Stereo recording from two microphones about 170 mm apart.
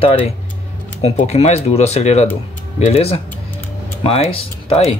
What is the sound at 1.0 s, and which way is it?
Speech, 40° left (ahead or behind).